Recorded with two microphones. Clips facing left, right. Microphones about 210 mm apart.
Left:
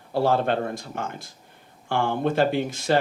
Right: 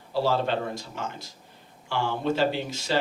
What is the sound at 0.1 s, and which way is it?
Speech, 55° left (ahead or behind).